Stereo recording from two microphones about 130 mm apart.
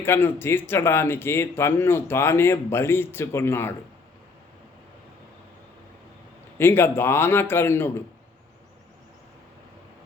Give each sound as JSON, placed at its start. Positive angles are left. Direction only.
{"t": 0.0, "sound": "speech", "side_deg": 15}
{"t": 6.6, "sound": "speech", "side_deg": 20}